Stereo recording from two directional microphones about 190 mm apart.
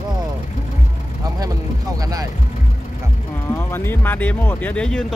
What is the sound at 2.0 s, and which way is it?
Speech, 20° right (ahead or behind).